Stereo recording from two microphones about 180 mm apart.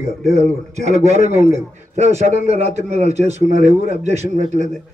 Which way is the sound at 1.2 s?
40° right (ahead or behind).